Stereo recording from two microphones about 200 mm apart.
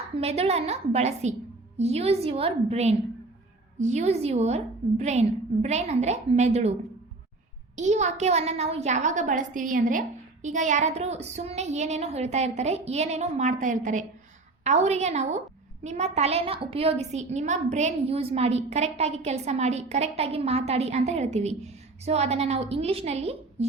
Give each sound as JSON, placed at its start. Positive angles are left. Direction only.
{"t": 0.2, "sound": "a woman's voice", "side_deg": -30}
{"t": 7.8, "sound": "a woman's voice", "side_deg": -35}